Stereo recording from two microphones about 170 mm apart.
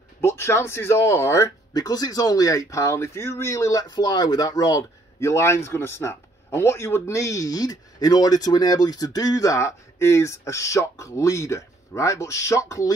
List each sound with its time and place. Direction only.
0.2 s speech: 15° left (ahead or behind)